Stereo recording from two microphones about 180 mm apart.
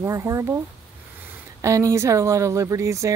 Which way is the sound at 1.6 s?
15° right (ahead or behind).